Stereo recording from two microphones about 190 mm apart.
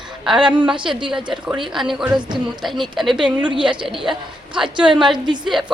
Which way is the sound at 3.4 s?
25° right (ahead or behind).